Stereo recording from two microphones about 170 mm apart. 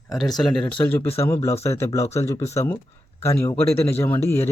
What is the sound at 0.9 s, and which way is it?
A man's voice, 15° left (ahead or behind).